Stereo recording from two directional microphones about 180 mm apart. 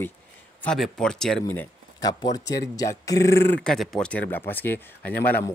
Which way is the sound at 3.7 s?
5° left (ahead or behind).